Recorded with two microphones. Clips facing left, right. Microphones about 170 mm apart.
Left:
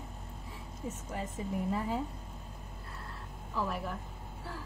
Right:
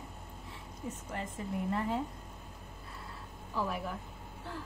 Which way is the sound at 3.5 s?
Centre (ahead or behind).